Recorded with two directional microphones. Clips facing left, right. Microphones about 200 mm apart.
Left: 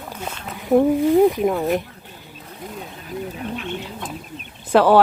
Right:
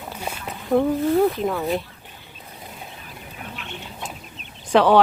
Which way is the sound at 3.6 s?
50° left (ahead or behind).